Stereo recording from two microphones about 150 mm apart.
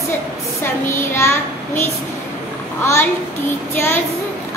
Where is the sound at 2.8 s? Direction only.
15° left (ahead or behind).